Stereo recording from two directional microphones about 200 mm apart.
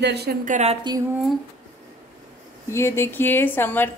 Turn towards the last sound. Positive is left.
turn(degrees=10)  # may be behind; listen again after turning